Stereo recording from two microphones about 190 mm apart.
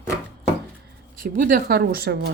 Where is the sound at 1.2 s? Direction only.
45° right (ahead or behind).